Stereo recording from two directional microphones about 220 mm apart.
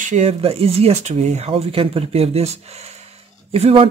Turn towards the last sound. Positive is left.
turn(degrees=-25)  # may be behind; listen again after turning